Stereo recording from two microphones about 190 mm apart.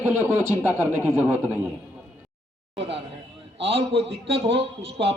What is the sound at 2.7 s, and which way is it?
A man's voice, 30° right (ahead or behind).